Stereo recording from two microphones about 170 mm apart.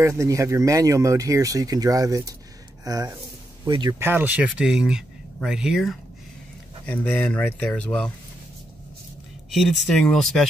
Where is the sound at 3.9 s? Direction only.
15° right (ahead or behind); by 8.1 s 5° left (ahead or behind).